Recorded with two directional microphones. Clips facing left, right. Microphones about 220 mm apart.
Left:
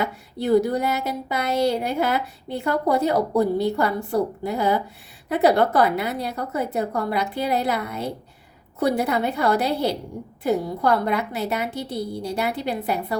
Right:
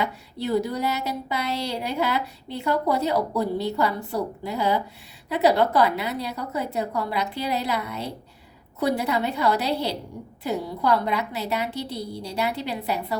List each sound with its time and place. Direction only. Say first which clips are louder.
0.0 s speech: left 2 dB; 50° left (ahead or behind)